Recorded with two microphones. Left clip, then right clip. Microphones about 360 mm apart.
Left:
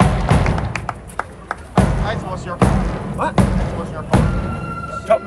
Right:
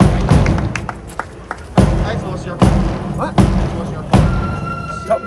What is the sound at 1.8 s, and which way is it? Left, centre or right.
Music, centre.